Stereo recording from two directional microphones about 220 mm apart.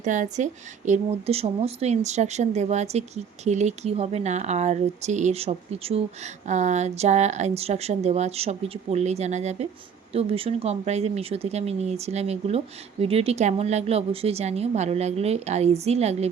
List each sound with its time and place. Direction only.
0.0 s a woman's voice: 35° right (ahead or behind)